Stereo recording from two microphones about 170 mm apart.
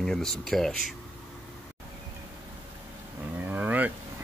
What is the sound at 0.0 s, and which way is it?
Speech, 5° left (ahead or behind).